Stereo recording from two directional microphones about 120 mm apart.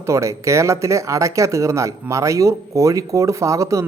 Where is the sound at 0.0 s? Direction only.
25° right (ahead or behind).